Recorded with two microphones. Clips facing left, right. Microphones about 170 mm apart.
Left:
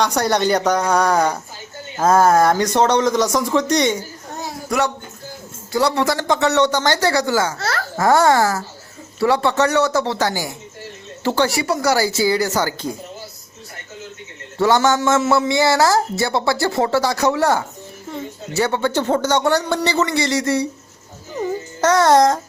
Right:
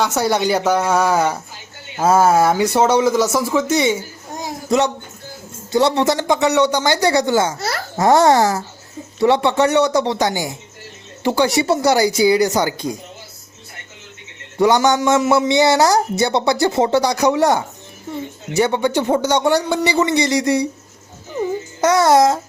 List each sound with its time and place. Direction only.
0.0 s speech: 5° right (ahead or behind); by 7.5 s 20° right (ahead or behind)
7.6 s a sound: 10° right (ahead or behind)
8.0 s a man's voice: 25° right (ahead or behind)
14.6 s speech: 15° right (ahead or behind)
21.8 s speech: 10° right (ahead or behind)